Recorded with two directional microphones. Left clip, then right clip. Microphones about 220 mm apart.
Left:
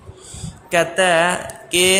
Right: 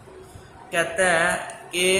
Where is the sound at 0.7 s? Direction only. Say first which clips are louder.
Left 5 dB; 45° left (ahead or behind).